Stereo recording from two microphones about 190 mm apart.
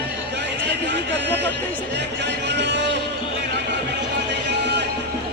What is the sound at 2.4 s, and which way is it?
Music, 65° right (ahead or behind).